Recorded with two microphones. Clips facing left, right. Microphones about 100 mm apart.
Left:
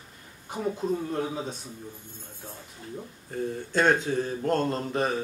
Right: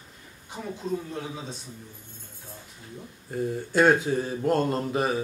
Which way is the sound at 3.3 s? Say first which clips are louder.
Right 2 dB; 5° right (ahead or behind).